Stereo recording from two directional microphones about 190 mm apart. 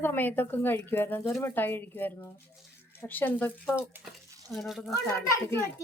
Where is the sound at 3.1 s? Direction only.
10° left (ahead or behind).